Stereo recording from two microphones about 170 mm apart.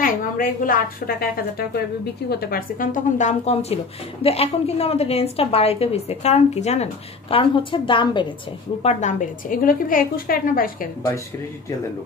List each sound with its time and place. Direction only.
0.0 s a woman's voice: 55° left (ahead or behind)
2.2 s speech: 70° left (ahead or behind); by 8.3 s 30° left (ahead or behind)
8.8 s a woman's voice: 45° left (ahead or behind)